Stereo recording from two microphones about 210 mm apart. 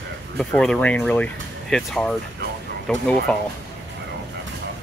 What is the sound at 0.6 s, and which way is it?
Speech, 5° left (ahead or behind).